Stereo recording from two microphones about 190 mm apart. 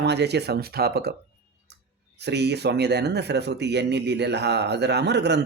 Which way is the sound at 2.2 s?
60° right (ahead or behind).